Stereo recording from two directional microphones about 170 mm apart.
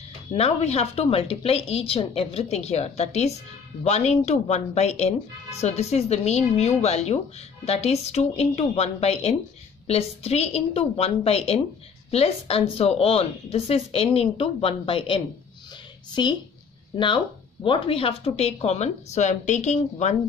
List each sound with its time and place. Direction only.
0.3 s a woman's voice: 40° left (ahead or behind)